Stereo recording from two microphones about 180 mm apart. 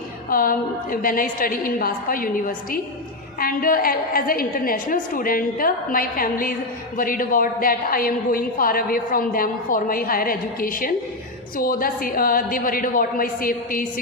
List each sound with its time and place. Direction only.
0.3 s a woman's voice: 55° left (ahead or behind)